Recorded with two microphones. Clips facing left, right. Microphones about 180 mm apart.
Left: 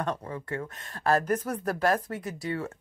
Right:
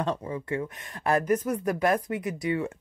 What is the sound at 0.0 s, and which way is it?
Speech, 20° right (ahead or behind).